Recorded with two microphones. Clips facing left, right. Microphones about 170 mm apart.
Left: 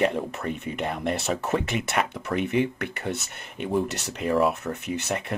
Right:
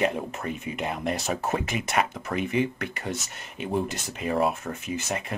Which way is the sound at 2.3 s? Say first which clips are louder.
Left 2 dB; 60° left (ahead or behind).